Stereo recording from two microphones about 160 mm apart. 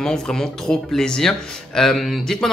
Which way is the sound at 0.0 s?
5° left (ahead or behind).